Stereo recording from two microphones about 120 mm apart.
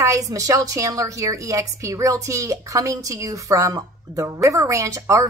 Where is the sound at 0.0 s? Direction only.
30° right (ahead or behind).